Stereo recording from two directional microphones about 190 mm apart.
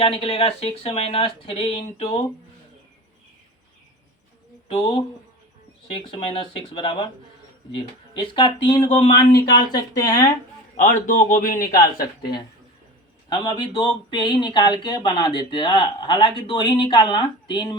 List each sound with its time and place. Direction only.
0.0 s speech: 30° left (ahead or behind)
4.7 s speech: 30° left (ahead or behind)
10.8 s a man's voice: 45° left (ahead or behind)
13.3 s speech: 25° left (ahead or behind)